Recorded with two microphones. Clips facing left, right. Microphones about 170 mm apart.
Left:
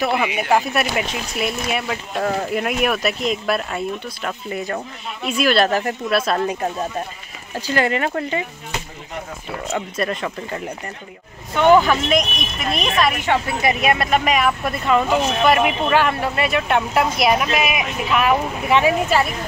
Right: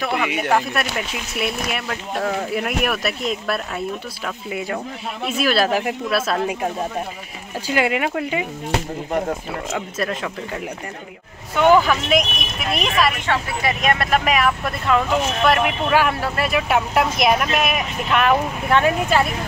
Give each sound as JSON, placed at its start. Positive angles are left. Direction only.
{"t": 0.0, "sound": "speech", "side_deg": 5}
{"t": 9.8, "sound": "speech", "side_deg": 0}
{"t": 13.2, "sound": "speech", "side_deg": 10}